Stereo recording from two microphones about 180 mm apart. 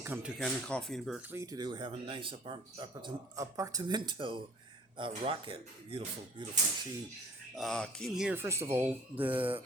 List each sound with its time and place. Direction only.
0.0 s speech: 10° right (ahead or behind)
0.3 s speech: 5° left (ahead or behind)
1.3 s speech: 20° right (ahead or behind)
3.3 s speech: 15° right (ahead or behind)
7.5 s speech: centre (ahead or behind)